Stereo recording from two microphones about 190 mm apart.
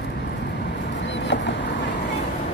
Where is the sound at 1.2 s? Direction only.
70° left (ahead or behind).